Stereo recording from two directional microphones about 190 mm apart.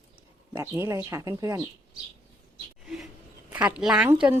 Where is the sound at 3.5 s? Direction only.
5° right (ahead or behind).